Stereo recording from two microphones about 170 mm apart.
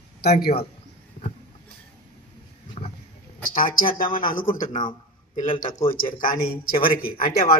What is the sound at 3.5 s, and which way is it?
Speech, 55° left (ahead or behind).